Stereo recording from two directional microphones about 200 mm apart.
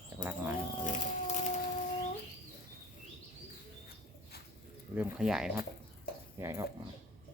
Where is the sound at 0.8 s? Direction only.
40° left (ahead or behind).